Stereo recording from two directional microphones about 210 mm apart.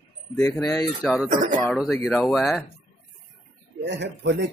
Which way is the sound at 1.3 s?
35° right (ahead or behind).